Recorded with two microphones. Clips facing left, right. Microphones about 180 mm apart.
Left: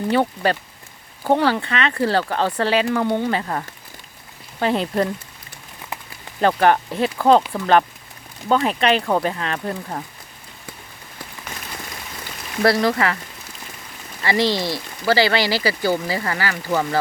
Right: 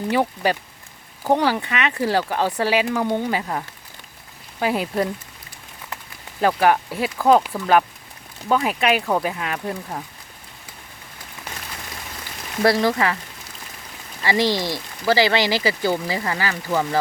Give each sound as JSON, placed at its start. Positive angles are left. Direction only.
{"t": 0.1, "sound": "speech", "side_deg": -10}
{"t": 4.6, "sound": "speech", "side_deg": -10}
{"t": 6.4, "sound": "speech", "side_deg": -5}
{"t": 12.6, "sound": "speech", "side_deg": -15}
{"t": 14.3, "sound": "speech", "side_deg": -15}